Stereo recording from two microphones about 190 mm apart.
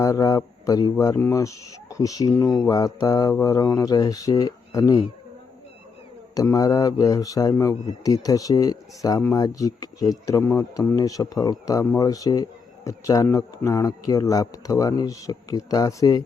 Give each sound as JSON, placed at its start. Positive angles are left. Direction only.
{"t": 0.0, "sound": "a man's voice", "side_deg": 20}
{"t": 6.3, "sound": "a man's voice", "side_deg": 20}